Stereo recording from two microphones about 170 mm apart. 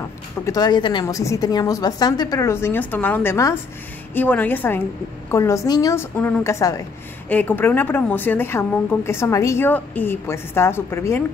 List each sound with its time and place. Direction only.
0.5 s a woman's voice: 25° left (ahead or behind)
6.1 s a woman's voice: 10° left (ahead or behind)